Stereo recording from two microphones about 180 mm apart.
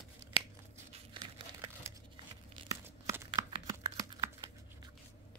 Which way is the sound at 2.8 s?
15° right (ahead or behind).